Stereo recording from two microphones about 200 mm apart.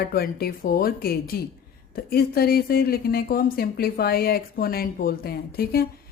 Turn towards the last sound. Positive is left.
turn(degrees=50)  # may be behind; listen again after turning